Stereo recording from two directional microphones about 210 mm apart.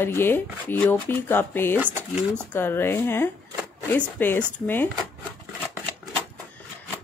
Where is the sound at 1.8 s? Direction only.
10° right (ahead or behind).